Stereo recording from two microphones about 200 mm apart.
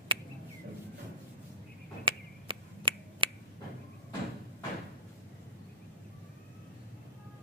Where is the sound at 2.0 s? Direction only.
25° right (ahead or behind).